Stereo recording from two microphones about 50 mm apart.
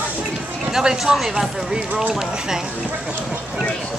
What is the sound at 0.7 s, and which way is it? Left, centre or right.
Speech, centre.